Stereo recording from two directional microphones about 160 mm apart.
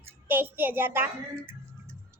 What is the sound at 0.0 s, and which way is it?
A child's voice, 15° right (ahead or behind).